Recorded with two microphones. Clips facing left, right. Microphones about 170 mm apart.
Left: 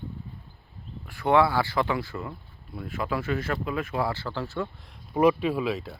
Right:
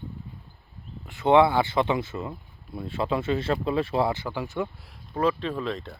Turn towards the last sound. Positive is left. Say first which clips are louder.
# left 3 dB
turn(degrees=5)  # may be behind; listen again after turning